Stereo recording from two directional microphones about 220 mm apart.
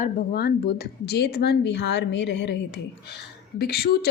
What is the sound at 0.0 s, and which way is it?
A woman's voice, 45° left (ahead or behind).